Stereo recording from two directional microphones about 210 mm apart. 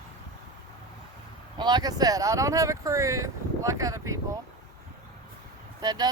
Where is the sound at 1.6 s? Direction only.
20° right (ahead or behind).